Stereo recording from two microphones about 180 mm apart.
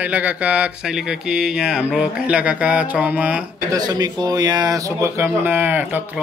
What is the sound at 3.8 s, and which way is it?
Speech, 20° right (ahead or behind).